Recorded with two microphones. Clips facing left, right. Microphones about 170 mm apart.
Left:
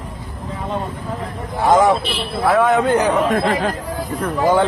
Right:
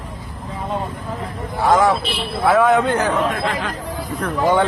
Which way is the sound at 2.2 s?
Centre (ahead or behind).